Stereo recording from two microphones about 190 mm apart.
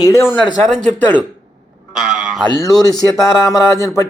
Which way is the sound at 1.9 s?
5° right (ahead or behind).